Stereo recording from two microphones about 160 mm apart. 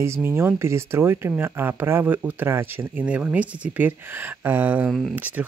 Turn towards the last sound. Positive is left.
turn(degrees=-10)  # may be behind; listen again after turning